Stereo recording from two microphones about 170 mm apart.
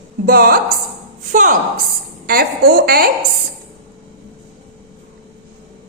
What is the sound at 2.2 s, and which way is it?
Speech, 60° right (ahead or behind).